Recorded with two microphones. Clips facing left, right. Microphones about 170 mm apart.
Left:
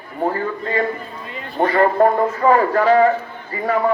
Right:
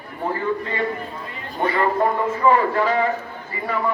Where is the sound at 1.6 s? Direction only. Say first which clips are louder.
Left 5 dB; 45° left (ahead or behind).